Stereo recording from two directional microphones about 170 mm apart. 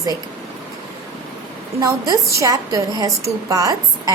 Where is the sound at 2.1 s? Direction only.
20° right (ahead or behind).